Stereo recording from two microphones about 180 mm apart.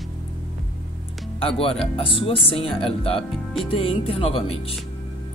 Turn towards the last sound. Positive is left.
turn(degrees=35)  # may be behind; listen again after turning